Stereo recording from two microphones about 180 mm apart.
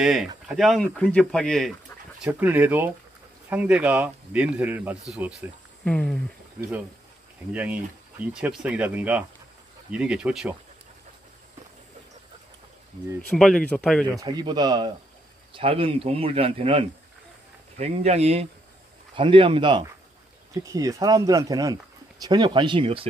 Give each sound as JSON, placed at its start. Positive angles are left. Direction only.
{"t": 0.0, "sound": "speech", "side_deg": 0}
{"t": 2.2, "sound": "speech", "side_deg": -10}
{"t": 5.9, "sound": "speech", "side_deg": 5}
{"t": 7.5, "sound": "speech", "side_deg": -10}
{"t": 13.3, "sound": "speech", "side_deg": 5}
{"t": 14.2, "sound": "speech", "side_deg": -25}